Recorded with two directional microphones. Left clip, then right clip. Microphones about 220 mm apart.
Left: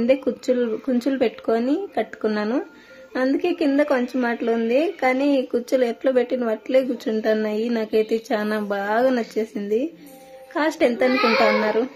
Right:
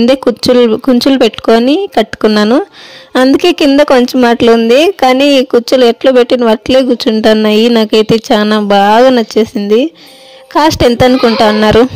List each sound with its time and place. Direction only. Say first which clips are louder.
0.0 s speech: right 12 dB; 40° right (ahead or behind)